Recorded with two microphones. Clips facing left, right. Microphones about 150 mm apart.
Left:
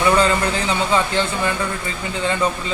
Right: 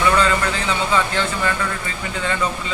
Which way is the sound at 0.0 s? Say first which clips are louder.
Left 1 dB; 30° left (ahead or behind).